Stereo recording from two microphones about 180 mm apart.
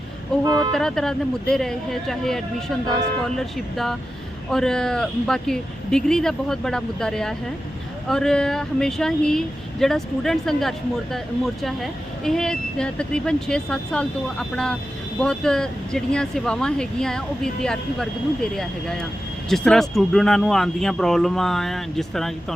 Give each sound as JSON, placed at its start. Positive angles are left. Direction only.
{"t": 0.4, "sound": "speech", "side_deg": -25}
{"t": 0.7, "sound": "speech", "side_deg": 0}